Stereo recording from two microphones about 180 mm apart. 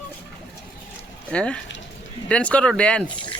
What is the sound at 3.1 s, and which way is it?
Speech, 25° left (ahead or behind).